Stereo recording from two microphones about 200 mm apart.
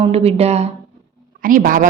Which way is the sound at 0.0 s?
30° right (ahead or behind).